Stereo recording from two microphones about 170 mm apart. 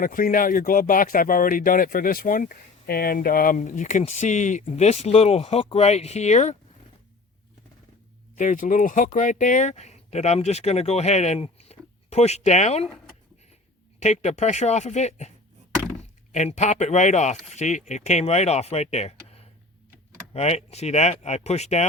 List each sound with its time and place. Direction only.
0.0 s speech: 55° left (ahead or behind)
8.4 s speech: 50° left (ahead or behind)
14.0 s speech: 40° left (ahead or behind)
16.3 s speech: 45° left (ahead or behind)